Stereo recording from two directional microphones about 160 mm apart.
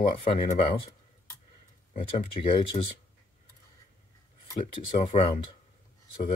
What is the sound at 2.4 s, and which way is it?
Speech, 35° left (ahead or behind).